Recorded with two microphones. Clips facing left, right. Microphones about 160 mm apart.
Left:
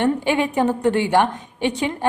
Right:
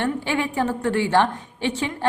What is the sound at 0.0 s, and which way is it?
A woman's voice, 20° left (ahead or behind).